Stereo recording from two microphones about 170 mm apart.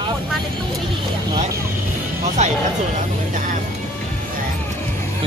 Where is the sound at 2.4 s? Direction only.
40° right (ahead or behind).